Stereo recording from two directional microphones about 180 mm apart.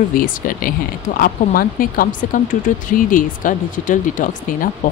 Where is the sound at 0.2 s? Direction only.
50° left (ahead or behind).